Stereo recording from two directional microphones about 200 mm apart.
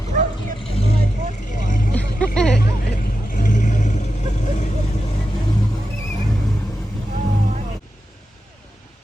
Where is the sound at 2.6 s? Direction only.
45° left (ahead or behind).